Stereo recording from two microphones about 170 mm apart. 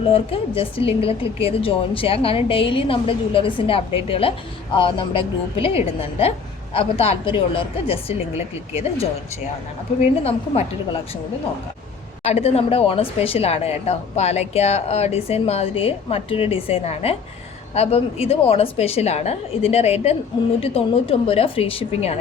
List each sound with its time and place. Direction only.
0.0 s a woman's voice: 35° left (ahead or behind)
10.2 s a woman's voice: 35° left (ahead or behind)
12.2 s a woman's voice: 35° left (ahead or behind)